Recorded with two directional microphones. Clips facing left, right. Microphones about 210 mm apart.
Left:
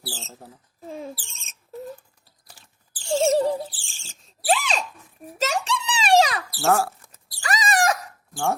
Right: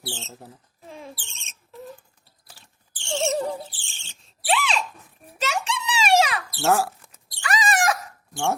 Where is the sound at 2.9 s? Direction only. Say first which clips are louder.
Left 5 dB; 30° right (ahead or behind).